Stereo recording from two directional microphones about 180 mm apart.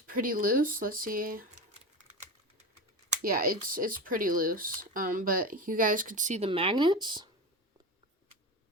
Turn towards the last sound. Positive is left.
turn(degrees=-25)  # may be behind; listen again after turning